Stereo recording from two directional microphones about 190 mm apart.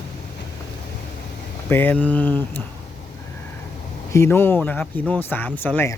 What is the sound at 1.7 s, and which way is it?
Speech, 10° left (ahead or behind).